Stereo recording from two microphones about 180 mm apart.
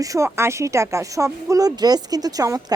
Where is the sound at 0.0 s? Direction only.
20° right (ahead or behind).